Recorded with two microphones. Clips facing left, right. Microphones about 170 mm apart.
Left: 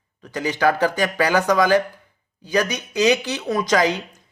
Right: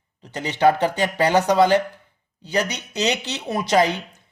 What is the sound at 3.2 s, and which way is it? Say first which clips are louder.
Speech: left 3 dB; 25° right (ahead or behind).